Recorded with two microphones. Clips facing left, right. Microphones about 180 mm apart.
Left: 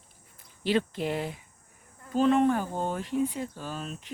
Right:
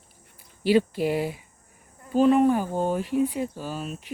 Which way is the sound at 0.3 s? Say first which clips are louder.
Right 6 dB; 10° right (ahead or behind).